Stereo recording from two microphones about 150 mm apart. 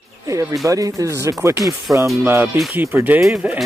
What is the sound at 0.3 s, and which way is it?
Speech, 20° right (ahead or behind).